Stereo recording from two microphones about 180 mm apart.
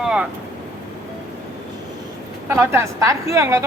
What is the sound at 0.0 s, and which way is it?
Vehicle, 5° right (ahead or behind).